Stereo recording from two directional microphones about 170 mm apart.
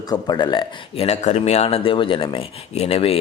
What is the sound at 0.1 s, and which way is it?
Speech, 25° left (ahead or behind).